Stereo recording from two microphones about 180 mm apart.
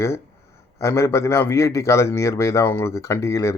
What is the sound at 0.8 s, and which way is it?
Speech, 15° left (ahead or behind).